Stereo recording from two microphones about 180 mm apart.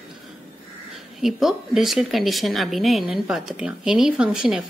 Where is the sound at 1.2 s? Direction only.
Centre (ahead or behind).